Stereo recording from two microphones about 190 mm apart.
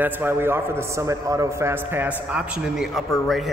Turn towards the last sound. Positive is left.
turn(degrees=0)  # may be behind; listen again after turning